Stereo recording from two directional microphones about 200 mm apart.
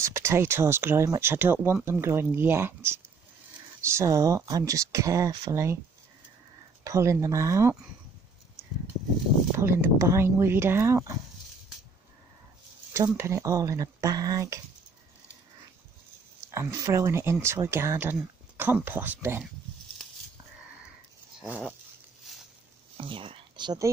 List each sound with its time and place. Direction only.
0.0 s speech: 15° right (ahead or behind)
6.8 s speech: 15° right (ahead or behind)
9.6 s speech: 10° right (ahead or behind)
12.9 s speech: 15° right (ahead or behind)
16.5 s speech: 15° right (ahead or behind)
22.9 s speech: 25° right (ahead or behind)